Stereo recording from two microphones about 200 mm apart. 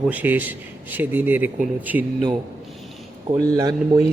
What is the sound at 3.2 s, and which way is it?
Speech, 20° right (ahead or behind).